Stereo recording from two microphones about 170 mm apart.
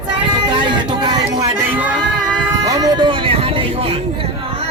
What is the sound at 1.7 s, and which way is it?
Music, 10° right (ahead or behind).